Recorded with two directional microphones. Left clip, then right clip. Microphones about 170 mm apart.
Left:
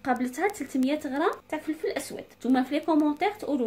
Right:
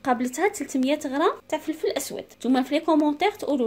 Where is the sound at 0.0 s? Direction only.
40° right (ahead or behind).